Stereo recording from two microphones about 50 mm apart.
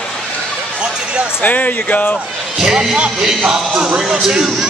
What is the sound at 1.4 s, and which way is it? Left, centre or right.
Speech, left.